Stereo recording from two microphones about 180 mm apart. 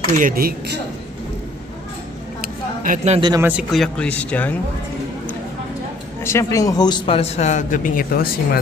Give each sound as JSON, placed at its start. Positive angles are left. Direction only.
{"t": 0.2, "sound": "a man's voice", "side_deg": -55}
{"t": 2.4, "sound": "a sound", "side_deg": -50}
{"t": 3.2, "sound": "speech", "side_deg": -25}
{"t": 3.4, "sound": "speech", "side_deg": -5}
{"t": 6.2, "sound": "a man's voice", "side_deg": 15}